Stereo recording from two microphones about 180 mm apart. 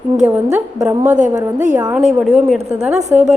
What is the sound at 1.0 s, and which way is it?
Speech, 40° right (ahead or behind).